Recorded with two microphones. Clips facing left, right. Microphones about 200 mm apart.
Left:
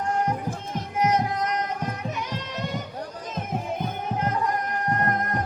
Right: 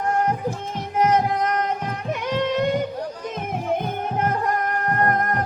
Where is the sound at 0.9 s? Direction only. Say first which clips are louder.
Right 4 dB; 55° right (ahead or behind).